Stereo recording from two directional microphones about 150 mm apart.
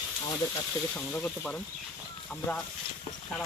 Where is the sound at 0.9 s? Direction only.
15° left (ahead or behind).